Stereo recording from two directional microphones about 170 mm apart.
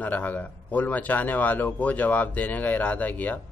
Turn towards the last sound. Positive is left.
turn(degrees=10)  # may be behind; listen again after turning